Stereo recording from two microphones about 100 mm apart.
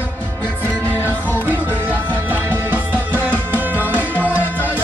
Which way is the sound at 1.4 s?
20° right (ahead or behind).